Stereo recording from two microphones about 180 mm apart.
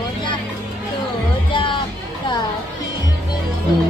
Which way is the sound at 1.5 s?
25° left (ahead or behind).